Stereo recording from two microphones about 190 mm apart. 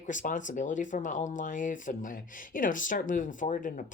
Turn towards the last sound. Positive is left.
turn(degrees=45)  # may be behind; listen again after turning